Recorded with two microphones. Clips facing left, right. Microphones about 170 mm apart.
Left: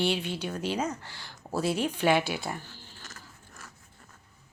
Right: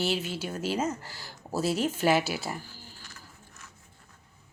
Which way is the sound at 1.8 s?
45° right (ahead or behind).